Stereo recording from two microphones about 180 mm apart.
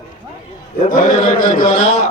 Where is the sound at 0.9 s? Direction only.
45° left (ahead or behind).